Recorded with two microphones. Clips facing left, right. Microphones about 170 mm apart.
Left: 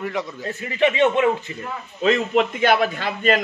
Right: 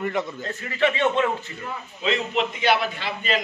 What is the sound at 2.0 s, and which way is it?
A man's voice, 45° left (ahead or behind).